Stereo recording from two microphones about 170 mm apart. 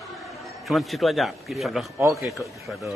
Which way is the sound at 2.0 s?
15° right (ahead or behind).